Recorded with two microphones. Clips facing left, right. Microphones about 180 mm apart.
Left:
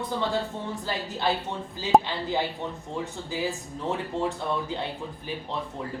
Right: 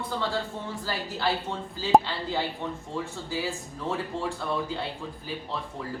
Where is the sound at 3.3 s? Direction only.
20° left (ahead or behind).